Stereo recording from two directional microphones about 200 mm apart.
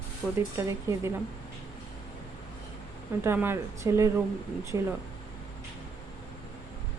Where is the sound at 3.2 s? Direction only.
10° right (ahead or behind).